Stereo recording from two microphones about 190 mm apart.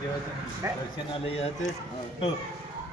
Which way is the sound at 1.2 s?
30° left (ahead or behind).